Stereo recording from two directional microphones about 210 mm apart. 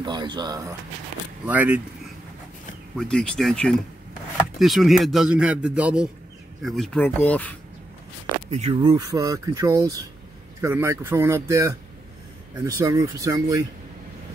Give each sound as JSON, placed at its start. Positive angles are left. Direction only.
{"t": 0.0, "sound": "speech", "side_deg": -20}
{"t": 1.4, "sound": "speech", "side_deg": -5}
{"t": 3.0, "sound": "speech", "side_deg": 5}
{"t": 8.5, "sound": "speech", "side_deg": -25}